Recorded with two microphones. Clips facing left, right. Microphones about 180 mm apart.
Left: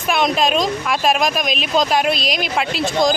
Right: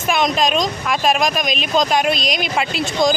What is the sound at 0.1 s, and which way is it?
Speech, centre (ahead or behind).